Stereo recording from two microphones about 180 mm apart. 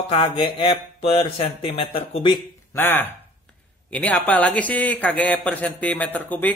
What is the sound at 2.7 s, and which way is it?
Speech, 10° left (ahead or behind).